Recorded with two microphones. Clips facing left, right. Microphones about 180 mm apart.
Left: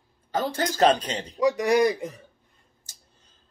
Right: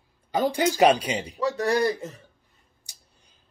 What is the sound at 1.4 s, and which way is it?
Speech, 15° left (ahead or behind).